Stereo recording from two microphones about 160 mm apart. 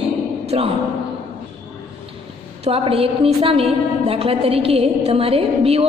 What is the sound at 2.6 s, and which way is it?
A woman's voice, 35° right (ahead or behind).